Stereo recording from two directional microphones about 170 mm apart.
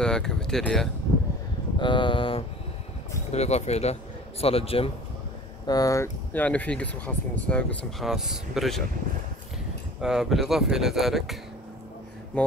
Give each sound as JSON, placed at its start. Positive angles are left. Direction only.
{"t": 0.0, "sound": "speech", "side_deg": 5}
{"t": 1.8, "sound": "a man's voice", "side_deg": 30}
{"t": 5.7, "sound": "speech", "side_deg": 20}
{"t": 9.9, "sound": "speech", "side_deg": 0}